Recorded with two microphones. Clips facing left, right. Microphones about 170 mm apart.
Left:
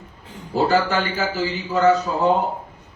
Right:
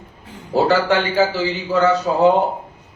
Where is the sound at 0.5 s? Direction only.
75° right (ahead or behind).